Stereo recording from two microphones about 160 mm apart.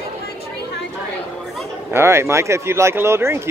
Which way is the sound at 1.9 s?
15° right (ahead or behind).